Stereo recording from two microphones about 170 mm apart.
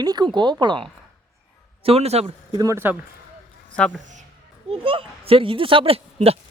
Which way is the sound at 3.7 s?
5° left (ahead or behind).